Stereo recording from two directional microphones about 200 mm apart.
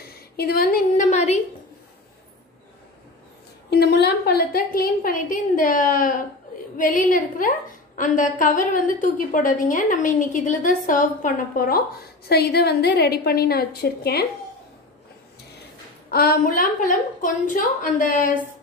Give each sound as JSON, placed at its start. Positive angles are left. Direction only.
{"t": 0.1, "sound": "a sound", "side_deg": 50}
{"t": 3.7, "sound": "a woman's voice", "side_deg": 55}
{"t": 15.6, "sound": "a woman's voice", "side_deg": 50}